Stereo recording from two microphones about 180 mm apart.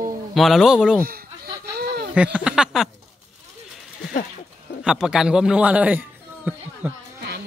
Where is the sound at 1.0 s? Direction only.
55° right (ahead or behind).